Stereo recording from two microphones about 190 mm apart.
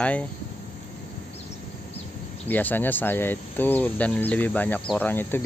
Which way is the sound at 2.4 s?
10° left (ahead or behind).